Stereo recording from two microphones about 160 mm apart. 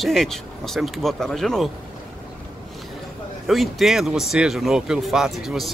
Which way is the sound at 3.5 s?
Centre (ahead or behind).